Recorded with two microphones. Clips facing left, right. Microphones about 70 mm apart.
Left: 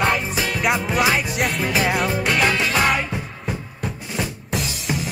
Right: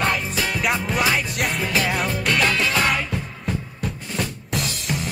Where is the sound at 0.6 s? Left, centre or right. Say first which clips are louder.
Left 3 dB; centre.